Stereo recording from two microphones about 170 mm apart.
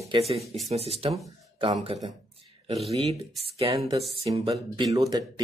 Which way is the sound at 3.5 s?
35° right (ahead or behind).